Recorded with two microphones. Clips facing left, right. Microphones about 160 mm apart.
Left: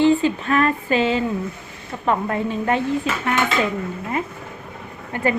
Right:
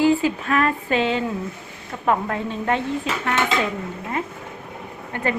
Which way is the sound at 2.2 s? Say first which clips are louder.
Left 3 dB; 5° left (ahead or behind).